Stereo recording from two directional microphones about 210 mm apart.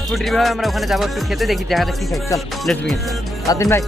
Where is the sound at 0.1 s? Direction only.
Centre (ahead or behind).